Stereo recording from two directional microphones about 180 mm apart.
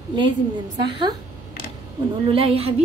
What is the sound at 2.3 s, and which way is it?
Speech, 30° right (ahead or behind).